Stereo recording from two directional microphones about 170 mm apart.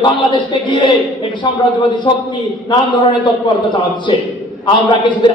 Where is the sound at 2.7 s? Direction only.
25° left (ahead or behind).